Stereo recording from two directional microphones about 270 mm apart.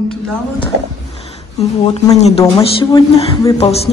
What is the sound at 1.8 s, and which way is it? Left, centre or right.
Speech, left.